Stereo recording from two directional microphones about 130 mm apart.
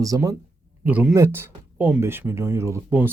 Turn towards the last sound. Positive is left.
turn(degrees=-20)  # may be behind; listen again after turning